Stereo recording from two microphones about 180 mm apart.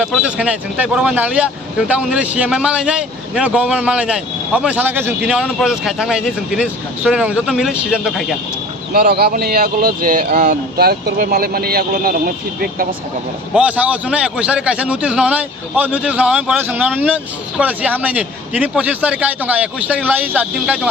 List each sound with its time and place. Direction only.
0.0 s a man's voice: 5° right (ahead or behind)
8.9 s speech: 60° right (ahead or behind); by 10.6 s 45° right (ahead or behind)
10.8 s speech: 60° right (ahead or behind)
13.5 s a man's voice: 5° right (ahead or behind)